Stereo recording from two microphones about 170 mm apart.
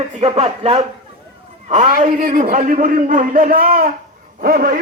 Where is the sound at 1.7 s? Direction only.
45° right (ahead or behind).